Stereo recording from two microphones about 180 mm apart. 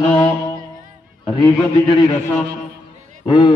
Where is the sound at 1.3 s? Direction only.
30° left (ahead or behind).